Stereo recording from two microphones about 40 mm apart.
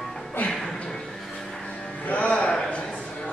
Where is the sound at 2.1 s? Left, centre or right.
Left.